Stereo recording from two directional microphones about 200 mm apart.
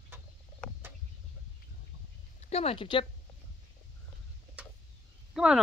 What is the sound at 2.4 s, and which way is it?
Speech, 30° left (ahead or behind).